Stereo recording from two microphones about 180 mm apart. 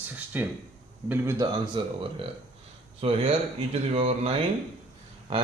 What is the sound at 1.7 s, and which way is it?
Speech, 30° right (ahead or behind).